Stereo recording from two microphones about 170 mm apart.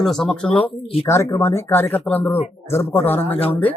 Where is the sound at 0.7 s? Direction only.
35° left (ahead or behind).